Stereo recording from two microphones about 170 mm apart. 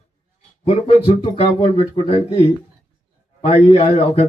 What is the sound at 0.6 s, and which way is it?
A man's voice, 35° left (ahead or behind).